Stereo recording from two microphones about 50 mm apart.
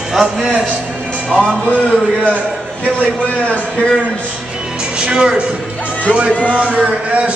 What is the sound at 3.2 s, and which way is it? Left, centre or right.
Speech, left.